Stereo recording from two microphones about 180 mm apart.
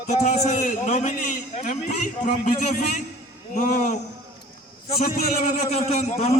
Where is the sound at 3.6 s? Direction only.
45° left (ahead or behind).